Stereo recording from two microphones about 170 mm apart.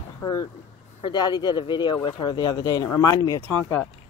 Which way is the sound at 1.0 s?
25° left (ahead or behind).